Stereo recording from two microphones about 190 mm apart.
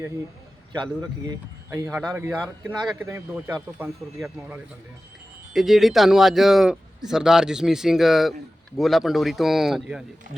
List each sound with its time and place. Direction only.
0.7 s a man's voice: 20° right (ahead or behind)
1.9 s speech: 5° right (ahead or behind)